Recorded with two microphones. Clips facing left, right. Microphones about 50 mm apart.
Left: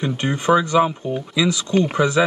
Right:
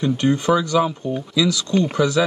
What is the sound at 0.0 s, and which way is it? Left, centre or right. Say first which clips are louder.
Speech: right 3 dB; left.